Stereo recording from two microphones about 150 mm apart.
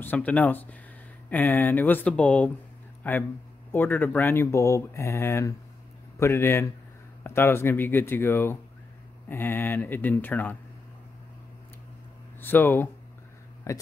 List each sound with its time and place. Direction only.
0.0 s speech: 10° left (ahead or behind)
12.4 s speech: 15° left (ahead or behind)